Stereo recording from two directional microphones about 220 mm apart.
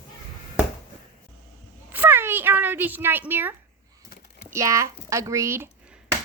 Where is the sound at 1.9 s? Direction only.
10° right (ahead or behind).